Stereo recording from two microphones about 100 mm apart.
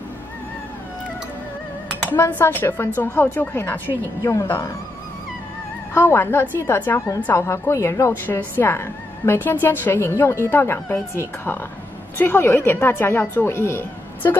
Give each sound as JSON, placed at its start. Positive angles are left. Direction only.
{"t": 2.0, "sound": "a woman's voice", "side_deg": 20}
{"t": 4.2, "sound": "a woman's voice", "side_deg": 35}
{"t": 5.9, "sound": "a woman's voice", "side_deg": 25}
{"t": 8.3, "sound": "a woman's voice", "side_deg": 20}